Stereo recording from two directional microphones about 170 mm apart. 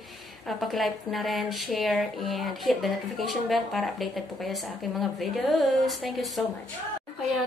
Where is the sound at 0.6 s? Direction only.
Centre (ahead or behind).